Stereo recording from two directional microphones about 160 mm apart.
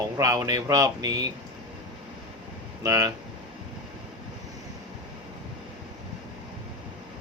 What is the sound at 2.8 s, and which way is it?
Speech, 20° right (ahead or behind).